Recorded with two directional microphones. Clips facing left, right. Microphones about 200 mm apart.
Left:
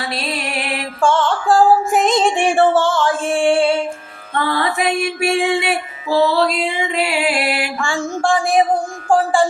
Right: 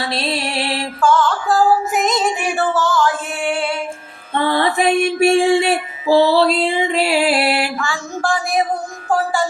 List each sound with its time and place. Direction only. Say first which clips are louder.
0.1 s music: right 2 dB; 30° right (ahead or behind)
1.0 s music: even; 30° left (ahead or behind)
4.4 s music: right 2 dB; 30° right (ahead or behind)
7.8 s a sound: left 3 dB; 30° left (ahead or behind)